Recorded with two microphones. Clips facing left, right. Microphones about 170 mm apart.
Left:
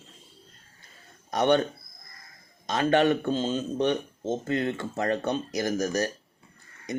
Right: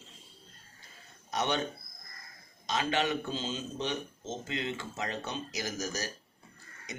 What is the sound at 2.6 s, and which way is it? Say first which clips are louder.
Speech: left 8 dB; 50° left (ahead or behind).